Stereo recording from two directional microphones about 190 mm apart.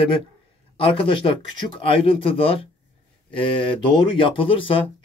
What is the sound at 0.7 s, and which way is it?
Speech, 25° left (ahead or behind).